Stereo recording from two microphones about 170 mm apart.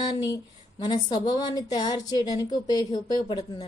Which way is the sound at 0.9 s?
25° left (ahead or behind).